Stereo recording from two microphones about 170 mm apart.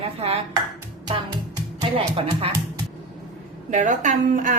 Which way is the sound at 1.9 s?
35° right (ahead or behind).